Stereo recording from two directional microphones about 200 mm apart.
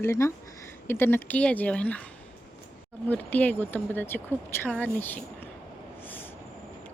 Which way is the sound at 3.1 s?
5° left (ahead or behind).